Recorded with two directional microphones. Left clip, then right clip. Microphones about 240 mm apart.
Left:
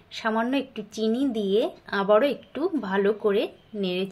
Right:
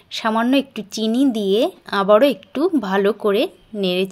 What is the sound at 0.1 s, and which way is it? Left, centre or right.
Speech, right.